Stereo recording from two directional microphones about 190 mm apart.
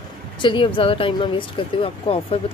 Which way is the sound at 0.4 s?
25° left (ahead or behind).